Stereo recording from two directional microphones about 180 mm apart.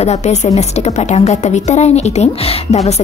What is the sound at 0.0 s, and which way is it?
Speech, 40° left (ahead or behind).